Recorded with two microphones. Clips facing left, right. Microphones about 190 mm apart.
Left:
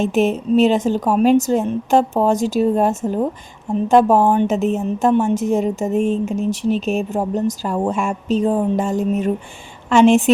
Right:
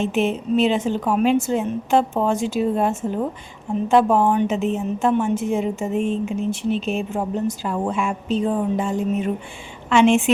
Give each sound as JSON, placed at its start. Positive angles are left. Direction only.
{"t": 0.0, "sound": "a woman's voice", "side_deg": 40}